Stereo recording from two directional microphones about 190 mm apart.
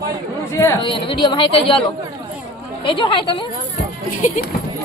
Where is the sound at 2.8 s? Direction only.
25° left (ahead or behind).